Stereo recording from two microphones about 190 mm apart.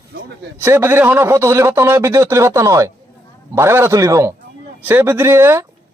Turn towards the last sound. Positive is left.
turn(degrees=-10)  # may be behind; listen again after turning